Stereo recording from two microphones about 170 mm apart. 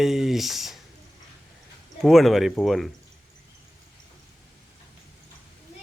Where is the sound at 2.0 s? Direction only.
Centre (ahead or behind).